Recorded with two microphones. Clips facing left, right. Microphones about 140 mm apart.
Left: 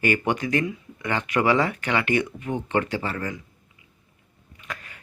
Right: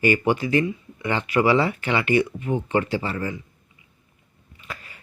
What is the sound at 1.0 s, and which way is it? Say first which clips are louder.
Speech: right 2 dB; 15° right (ahead or behind).